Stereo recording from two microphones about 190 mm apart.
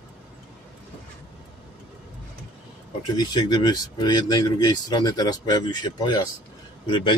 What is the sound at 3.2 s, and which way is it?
Speech, 20° left (ahead or behind).